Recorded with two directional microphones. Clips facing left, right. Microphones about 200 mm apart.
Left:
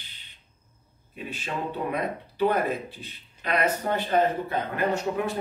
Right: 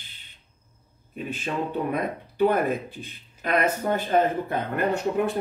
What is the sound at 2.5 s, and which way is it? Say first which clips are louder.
Speech: right 2 dB; 50° right (ahead or behind).